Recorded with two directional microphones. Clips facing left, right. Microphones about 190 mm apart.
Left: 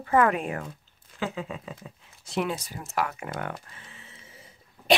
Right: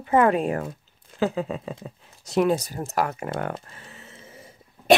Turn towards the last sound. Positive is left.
turn(degrees=-40)  # may be behind; listen again after turning